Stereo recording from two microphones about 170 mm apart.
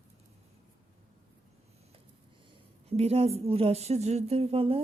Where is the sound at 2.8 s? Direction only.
35° right (ahead or behind).